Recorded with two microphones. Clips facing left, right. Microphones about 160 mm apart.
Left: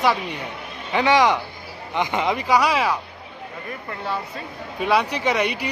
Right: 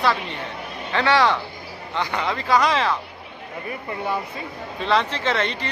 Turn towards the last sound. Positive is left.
turn(degrees=15)  # may be behind; listen again after turning